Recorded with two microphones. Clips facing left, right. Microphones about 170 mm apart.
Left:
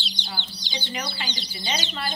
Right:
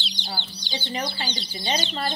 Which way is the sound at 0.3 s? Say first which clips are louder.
Right 4 dB; 35° right (ahead or behind).